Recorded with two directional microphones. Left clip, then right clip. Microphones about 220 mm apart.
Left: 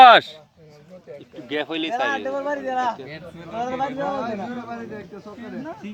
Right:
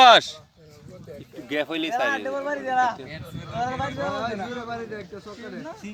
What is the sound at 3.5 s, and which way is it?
Speech, 35° left (ahead or behind).